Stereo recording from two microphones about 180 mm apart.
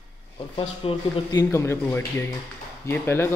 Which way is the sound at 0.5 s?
25° left (ahead or behind).